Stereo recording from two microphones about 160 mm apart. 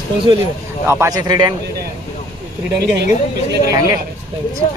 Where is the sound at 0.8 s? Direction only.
15° right (ahead or behind).